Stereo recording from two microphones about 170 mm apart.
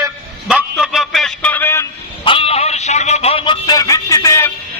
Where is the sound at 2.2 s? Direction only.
30° left (ahead or behind); by 4.5 s 15° left (ahead or behind).